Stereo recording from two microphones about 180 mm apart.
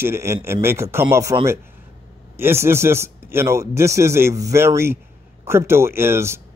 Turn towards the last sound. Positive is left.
turn(degrees=-15)  # may be behind; listen again after turning